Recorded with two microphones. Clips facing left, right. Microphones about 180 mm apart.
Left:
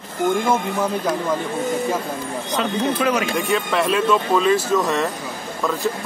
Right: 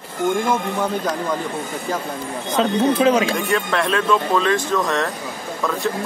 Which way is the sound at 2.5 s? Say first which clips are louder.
Right 4 dB; 25° right (ahead or behind).